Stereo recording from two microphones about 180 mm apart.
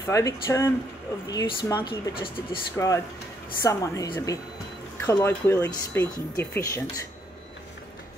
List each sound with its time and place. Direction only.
0.0 s speech: 15° left (ahead or behind)